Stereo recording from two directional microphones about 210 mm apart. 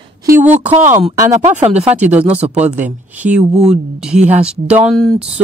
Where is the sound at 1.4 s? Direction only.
30° right (ahead or behind).